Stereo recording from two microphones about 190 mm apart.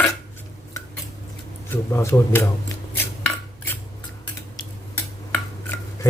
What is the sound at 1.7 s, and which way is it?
Speech, 15° left (ahead or behind).